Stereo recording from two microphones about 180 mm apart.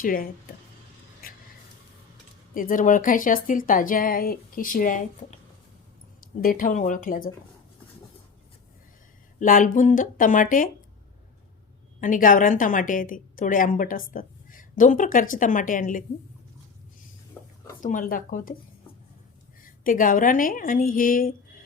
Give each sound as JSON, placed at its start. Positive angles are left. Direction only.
{"t": 0.0, "sound": "speech", "side_deg": 50}
{"t": 2.6, "sound": "speech", "side_deg": 50}
{"t": 9.4, "sound": "speech", "side_deg": 45}
{"t": 11.9, "sound": "a woman's voice", "side_deg": 45}
{"t": 17.4, "sound": "a sound", "side_deg": 10}
{"t": 17.8, "sound": "speech", "side_deg": 50}
{"t": 19.6, "sound": "speech", "side_deg": 50}